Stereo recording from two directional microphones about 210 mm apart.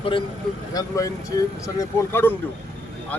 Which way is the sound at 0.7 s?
15° left (ahead or behind).